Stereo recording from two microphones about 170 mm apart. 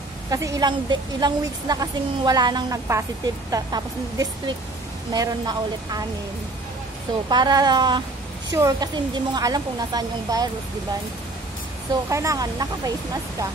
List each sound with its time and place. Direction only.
0.3 s a woman's voice: 20° right (ahead or behind)
7.2 s a woman's voice: 25° right (ahead or behind)
11.9 s a woman's voice: 20° right (ahead or behind)